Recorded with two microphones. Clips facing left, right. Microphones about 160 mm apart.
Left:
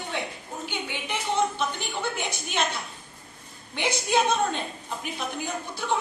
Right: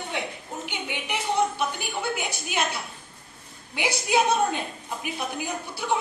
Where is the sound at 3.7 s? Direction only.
10° right (ahead or behind).